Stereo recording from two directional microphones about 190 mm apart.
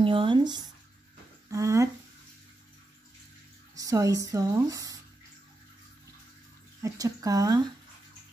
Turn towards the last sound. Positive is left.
turn(degrees=-20)  # may be behind; listen again after turning